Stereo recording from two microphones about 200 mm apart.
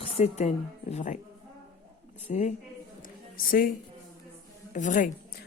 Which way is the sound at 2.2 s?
40° left (ahead or behind).